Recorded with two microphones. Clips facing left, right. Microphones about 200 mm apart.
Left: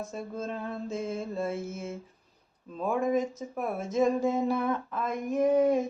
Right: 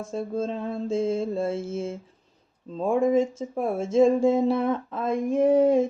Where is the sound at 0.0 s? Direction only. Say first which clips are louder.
Right 7 dB; 30° right (ahead or behind).